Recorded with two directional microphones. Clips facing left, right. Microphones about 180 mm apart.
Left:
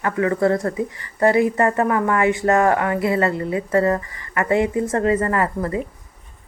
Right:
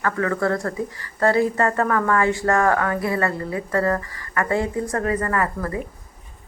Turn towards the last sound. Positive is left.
turn(degrees=25)  # may be behind; listen again after turning